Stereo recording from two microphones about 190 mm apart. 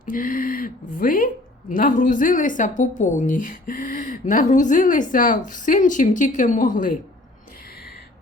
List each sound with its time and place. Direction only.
0.0 s speech: 45° left (ahead or behind)